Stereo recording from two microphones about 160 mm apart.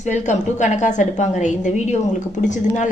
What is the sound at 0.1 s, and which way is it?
A woman's voice, 50° left (ahead or behind).